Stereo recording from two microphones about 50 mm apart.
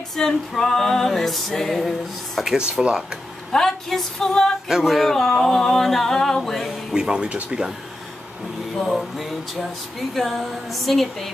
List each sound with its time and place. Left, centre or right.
0.1 s music: centre
2.4 s speech: centre
3.5 s music: centre
4.6 s speech: centre
5.1 s music: centre
6.9 s speech: centre
8.7 s music: centre
9.6 s speech: centre